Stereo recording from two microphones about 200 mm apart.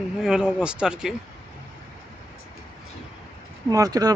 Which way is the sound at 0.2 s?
5° right (ahead or behind).